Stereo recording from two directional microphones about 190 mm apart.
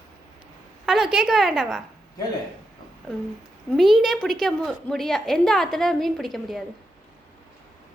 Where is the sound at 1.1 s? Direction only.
Centre (ahead or behind).